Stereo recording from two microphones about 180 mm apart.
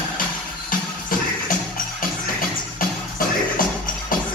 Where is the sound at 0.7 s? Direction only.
50° left (ahead or behind).